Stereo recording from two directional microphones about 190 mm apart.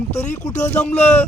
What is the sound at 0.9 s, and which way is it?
Speech, 35° left (ahead or behind).